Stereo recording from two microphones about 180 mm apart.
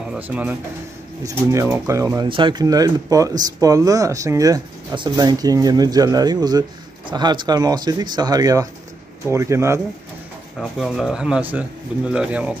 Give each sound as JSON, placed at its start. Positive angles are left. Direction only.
{"t": 0.0, "sound": "speech", "side_deg": -5}
{"t": 2.2, "sound": "speech", "side_deg": -25}
{"t": 10.6, "sound": "speech", "side_deg": 0}